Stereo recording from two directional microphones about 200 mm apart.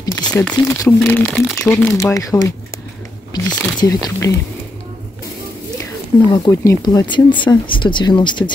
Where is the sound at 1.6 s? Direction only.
10° left (ahead or behind).